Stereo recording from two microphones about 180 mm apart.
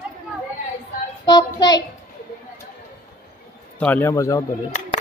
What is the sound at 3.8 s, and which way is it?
Speech, 10° left (ahead or behind).